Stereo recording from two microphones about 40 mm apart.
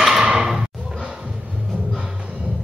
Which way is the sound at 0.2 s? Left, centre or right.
Centre.